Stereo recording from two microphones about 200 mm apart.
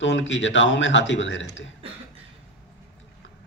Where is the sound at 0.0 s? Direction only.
65° left (ahead or behind).